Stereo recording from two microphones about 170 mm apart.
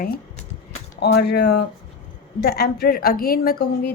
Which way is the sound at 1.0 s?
75° left (ahead or behind).